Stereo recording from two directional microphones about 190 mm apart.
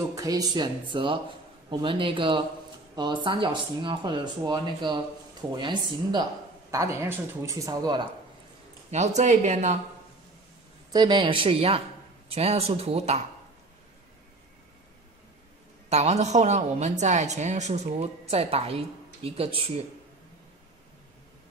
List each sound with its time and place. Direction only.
0.1 s speech: 20° right (ahead or behind)
8.9 s a woman's voice: 35° right (ahead or behind)
10.9 s a woman's voice: 25° right (ahead or behind)
15.9 s a woman's voice: 35° right (ahead or behind)